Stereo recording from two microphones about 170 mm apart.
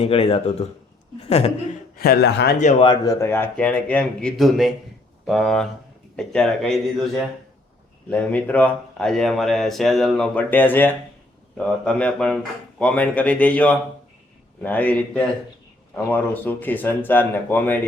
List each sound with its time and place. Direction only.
0.0 s speech: 35° left (ahead or behind)
2.0 s speech: 70° left (ahead or behind)
2.6 s a man's voice: 45° left (ahead or behind)
2.8 s speech: 25° left (ahead or behind)